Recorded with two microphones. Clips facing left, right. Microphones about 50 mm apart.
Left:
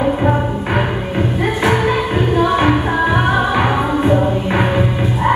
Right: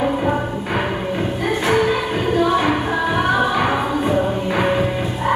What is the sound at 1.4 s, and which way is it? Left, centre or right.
Music, left.